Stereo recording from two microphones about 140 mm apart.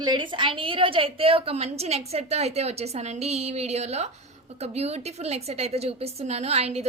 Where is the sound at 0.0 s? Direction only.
35° right (ahead or behind).